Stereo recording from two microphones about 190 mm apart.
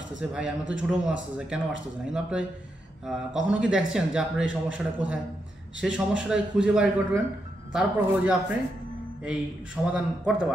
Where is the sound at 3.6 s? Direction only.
5° right (ahead or behind).